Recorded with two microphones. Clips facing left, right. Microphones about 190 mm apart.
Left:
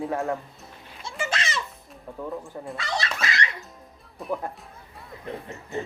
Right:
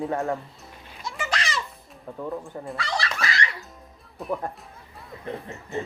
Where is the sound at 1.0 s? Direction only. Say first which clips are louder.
Even; 25° left (ahead or behind).